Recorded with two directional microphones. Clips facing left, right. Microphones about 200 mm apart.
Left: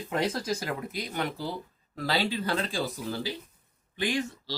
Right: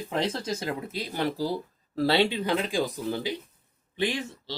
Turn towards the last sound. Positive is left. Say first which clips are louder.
# even
turn(degrees=-25)  # may be behind; listen again after turning